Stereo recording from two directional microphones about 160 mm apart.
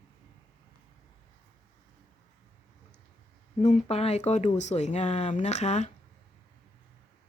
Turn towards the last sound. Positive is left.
turn(degrees=45)  # may be behind; listen again after turning